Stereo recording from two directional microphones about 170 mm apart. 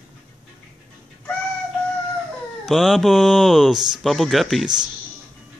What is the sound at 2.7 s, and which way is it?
Speech, centre (ahead or behind).